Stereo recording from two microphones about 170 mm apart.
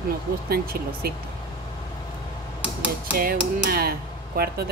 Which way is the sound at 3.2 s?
60° right (ahead or behind).